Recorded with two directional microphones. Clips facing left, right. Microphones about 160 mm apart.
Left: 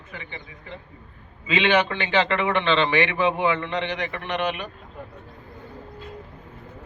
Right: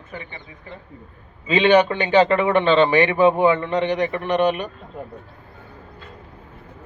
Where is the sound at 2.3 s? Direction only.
40° right (ahead or behind).